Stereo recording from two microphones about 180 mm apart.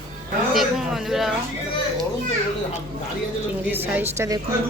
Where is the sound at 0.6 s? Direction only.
Centre (ahead or behind).